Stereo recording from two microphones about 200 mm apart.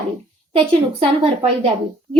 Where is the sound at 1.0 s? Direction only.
30° right (ahead or behind).